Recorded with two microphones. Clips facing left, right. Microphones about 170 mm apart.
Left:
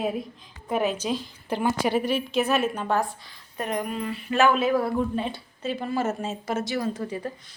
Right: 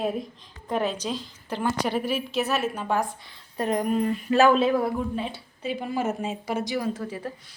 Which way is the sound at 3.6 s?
35° right (ahead or behind).